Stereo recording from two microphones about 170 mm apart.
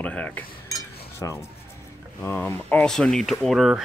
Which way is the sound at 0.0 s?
5° left (ahead or behind).